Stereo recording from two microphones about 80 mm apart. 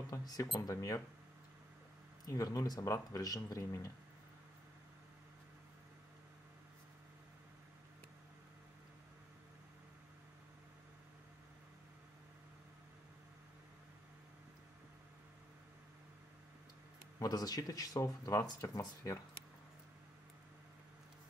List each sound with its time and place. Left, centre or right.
0.0 s speech: left
2.2 s speech: left
17.2 s speech: left